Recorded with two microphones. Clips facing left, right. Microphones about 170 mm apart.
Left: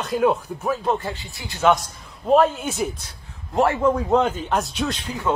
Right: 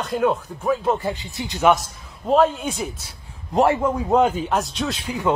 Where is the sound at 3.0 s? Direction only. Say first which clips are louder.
Even; 10° right (ahead or behind).